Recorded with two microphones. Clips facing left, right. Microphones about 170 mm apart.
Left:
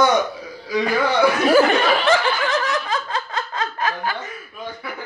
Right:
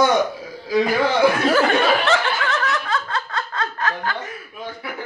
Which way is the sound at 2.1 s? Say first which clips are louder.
Left 2 dB; 15° left (ahead or behind).